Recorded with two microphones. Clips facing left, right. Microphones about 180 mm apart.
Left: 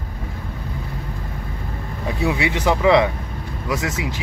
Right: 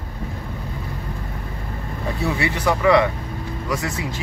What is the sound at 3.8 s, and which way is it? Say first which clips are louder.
Speech: left 1 dB; 90° left.